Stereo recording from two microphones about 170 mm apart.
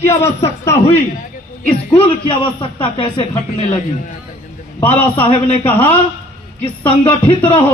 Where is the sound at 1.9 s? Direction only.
35° left (ahead or behind).